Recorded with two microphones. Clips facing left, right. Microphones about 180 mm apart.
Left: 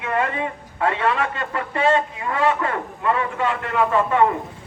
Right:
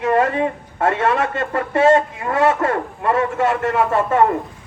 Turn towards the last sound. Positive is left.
turn(degrees=-45)  # may be behind; listen again after turning